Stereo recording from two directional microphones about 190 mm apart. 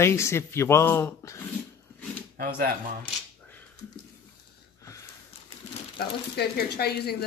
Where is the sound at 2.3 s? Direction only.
50° right (ahead or behind).